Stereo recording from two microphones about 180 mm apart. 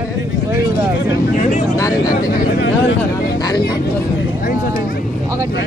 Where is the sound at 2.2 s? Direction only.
50° left (ahead or behind).